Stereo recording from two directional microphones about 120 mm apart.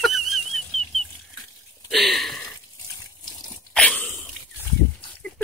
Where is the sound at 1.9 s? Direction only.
Centre (ahead or behind).